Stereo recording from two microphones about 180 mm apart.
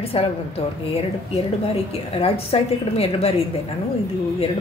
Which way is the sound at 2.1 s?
30° left (ahead or behind).